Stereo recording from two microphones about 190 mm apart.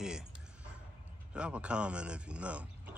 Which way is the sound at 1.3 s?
5° right (ahead or behind).